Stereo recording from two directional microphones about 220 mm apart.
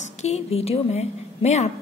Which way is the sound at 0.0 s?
30° left (ahead or behind).